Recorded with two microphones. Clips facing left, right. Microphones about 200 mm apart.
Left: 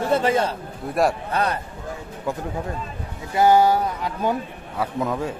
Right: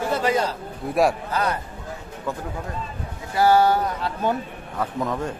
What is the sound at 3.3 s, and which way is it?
A man's voice, 20° left (ahead or behind).